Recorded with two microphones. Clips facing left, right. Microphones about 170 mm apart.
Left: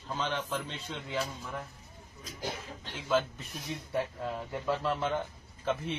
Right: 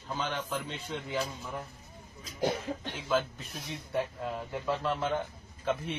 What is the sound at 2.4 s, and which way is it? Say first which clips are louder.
Speech: right 9 dB; 55° right (ahead or behind).